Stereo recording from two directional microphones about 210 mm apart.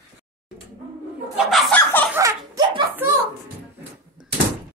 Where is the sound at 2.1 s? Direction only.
15° right (ahead or behind).